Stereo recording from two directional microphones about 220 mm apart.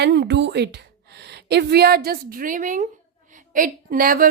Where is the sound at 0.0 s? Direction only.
50° right (ahead or behind).